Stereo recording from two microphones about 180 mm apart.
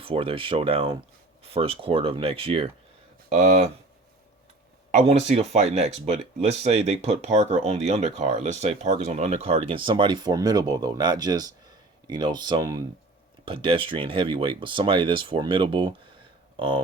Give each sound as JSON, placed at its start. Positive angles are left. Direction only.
{"t": 0.0, "sound": "speech", "side_deg": -30}
{"t": 4.9, "sound": "speech", "side_deg": -35}